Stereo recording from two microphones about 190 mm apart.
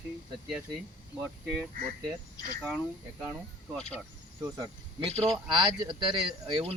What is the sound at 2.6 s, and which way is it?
Speech, centre (ahead or behind).